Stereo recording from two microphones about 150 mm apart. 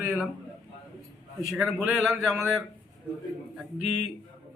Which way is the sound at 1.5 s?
Centre (ahead or behind).